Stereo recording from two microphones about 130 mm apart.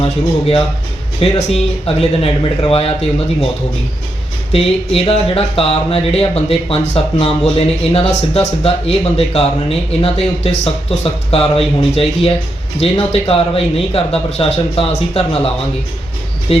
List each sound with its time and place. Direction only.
0.0 s speech: 45° left (ahead or behind)
4.5 s speech: 50° left (ahead or behind)